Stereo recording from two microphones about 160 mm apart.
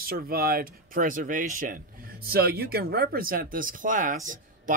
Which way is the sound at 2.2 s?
75° right (ahead or behind).